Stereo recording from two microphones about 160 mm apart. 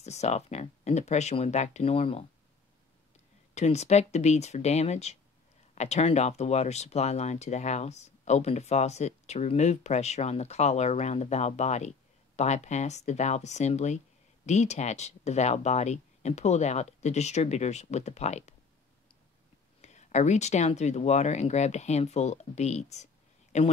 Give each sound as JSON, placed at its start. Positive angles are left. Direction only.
{"t": 0.0, "sound": "speech", "side_deg": 45}
{"t": 3.5, "sound": "speech", "side_deg": 45}
{"t": 19.8, "sound": "speech", "side_deg": 45}